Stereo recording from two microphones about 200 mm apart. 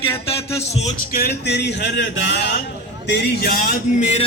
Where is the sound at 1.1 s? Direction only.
55° left (ahead or behind).